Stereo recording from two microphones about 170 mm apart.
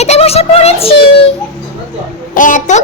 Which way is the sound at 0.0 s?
40° left (ahead or behind).